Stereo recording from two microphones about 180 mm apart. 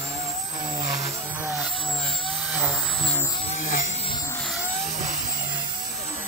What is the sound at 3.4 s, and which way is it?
Vehicle, 45° left (ahead or behind).